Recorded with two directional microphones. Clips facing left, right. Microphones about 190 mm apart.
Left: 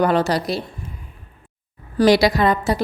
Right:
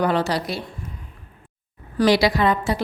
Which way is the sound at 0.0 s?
45° left (ahead or behind).